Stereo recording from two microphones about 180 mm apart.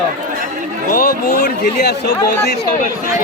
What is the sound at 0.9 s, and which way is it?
A man's voice, 55° left (ahead or behind).